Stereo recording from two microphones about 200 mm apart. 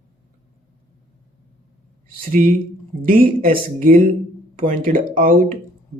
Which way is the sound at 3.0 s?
45° right (ahead or behind).